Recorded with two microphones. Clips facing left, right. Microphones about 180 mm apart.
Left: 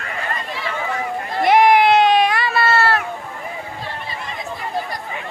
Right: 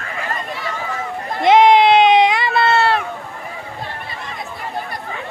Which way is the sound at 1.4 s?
20° right (ahead or behind).